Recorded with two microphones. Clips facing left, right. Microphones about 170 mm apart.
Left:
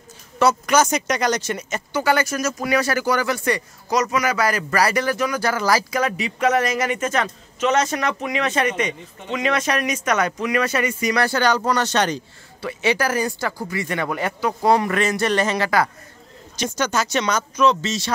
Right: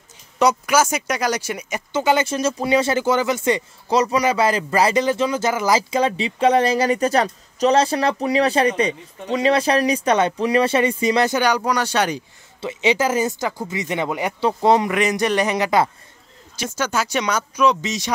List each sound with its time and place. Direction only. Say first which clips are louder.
0.4 s speech: even; 10° right (ahead or behind)
1.9 s speech: right 2 dB; 20° right (ahead or behind)
12.6 s speech: right 2 dB; 20° right (ahead or behind)
16.5 s speech: left 1 dB; 5° right (ahead or behind)